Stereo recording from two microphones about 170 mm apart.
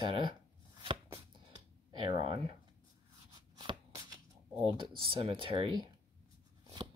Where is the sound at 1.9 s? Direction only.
30° right (ahead or behind).